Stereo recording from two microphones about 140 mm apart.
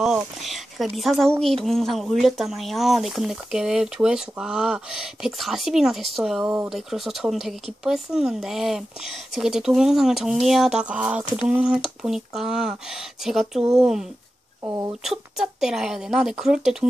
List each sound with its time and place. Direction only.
0.0 s speech: centre (ahead or behind)
14.6 s speech: 25° right (ahead or behind)
15.0 s speech: 5° right (ahead or behind)